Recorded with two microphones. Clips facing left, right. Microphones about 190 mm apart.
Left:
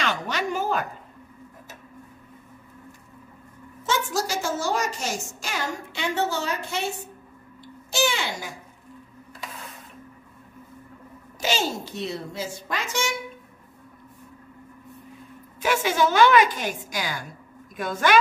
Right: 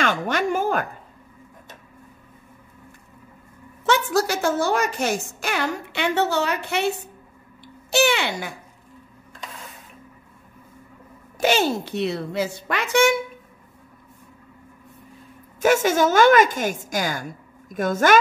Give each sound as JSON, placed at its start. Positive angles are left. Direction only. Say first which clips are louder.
{"t": 0.0, "sound": "a sound", "louder": "right 5 dB", "side_deg": -50}
{"t": 3.8, "sound": "a woman's voice", "louder": "right 6 dB", "side_deg": -65}
{"t": 7.6, "sound": "babbling", "louder": "right 5 dB", "side_deg": -65}
{"t": 11.3, "sound": "a woman's voice", "louder": "right 6 dB", "side_deg": -60}
{"t": 15.6, "sound": "a woman's voice", "louder": "right 5 dB", "side_deg": -45}